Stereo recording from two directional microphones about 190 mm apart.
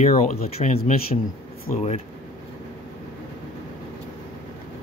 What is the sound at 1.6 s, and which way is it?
Speech, 35° left (ahead or behind).